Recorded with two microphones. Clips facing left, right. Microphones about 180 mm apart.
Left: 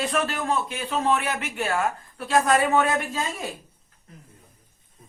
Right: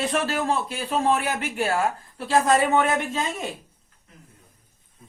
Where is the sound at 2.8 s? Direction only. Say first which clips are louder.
Right 1 dB; 25° right (ahead or behind).